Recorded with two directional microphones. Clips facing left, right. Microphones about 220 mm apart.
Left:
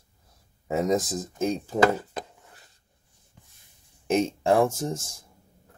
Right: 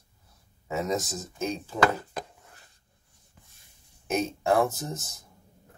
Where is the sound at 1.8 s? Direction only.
25° left (ahead or behind).